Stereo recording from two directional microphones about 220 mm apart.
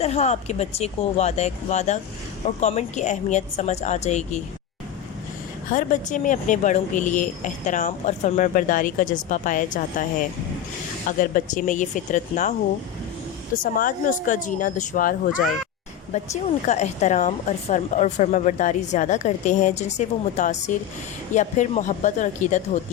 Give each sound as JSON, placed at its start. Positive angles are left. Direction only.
{"t": 0.0, "sound": "speech", "side_deg": 30}
{"t": 5.7, "sound": "speech", "side_deg": 35}
{"t": 13.7, "sound": "speech", "side_deg": 35}